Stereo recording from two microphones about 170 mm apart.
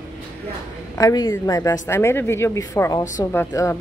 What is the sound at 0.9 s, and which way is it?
Speech, 20° left (ahead or behind).